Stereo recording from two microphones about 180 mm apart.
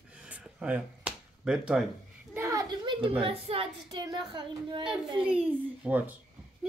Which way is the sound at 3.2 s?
30° right (ahead or behind).